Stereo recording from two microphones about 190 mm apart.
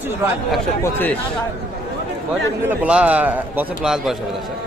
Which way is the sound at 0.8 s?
10° left (ahead or behind).